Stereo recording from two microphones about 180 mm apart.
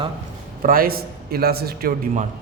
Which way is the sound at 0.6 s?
55° right (ahead or behind).